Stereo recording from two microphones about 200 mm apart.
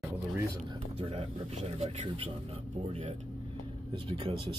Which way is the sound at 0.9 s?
30° right (ahead or behind).